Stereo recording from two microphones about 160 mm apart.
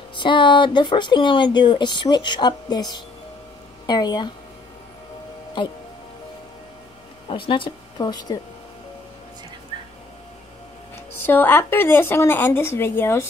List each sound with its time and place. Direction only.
0.1 s a woman's voice: 30° left (ahead or behind)
7.2 s speech: 35° left (ahead or behind)
11.2 s a woman's voice: 10° left (ahead or behind)